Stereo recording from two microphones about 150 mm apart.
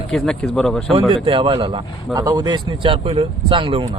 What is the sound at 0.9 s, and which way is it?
Speech, 35° right (ahead or behind).